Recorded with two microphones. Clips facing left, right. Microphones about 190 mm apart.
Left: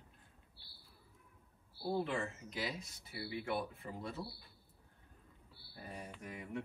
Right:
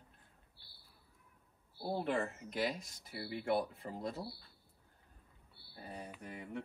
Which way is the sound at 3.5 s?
35° right (ahead or behind).